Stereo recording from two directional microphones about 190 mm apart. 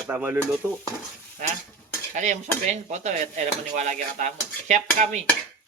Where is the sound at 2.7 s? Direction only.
35° right (ahead or behind).